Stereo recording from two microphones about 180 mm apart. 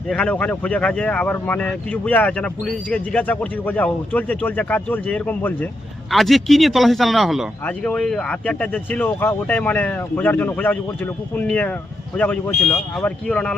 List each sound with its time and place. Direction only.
0.1 s speech: 5° left (ahead or behind)